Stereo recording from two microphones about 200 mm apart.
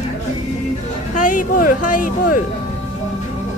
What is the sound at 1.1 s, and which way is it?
Speech, 40° left (ahead or behind).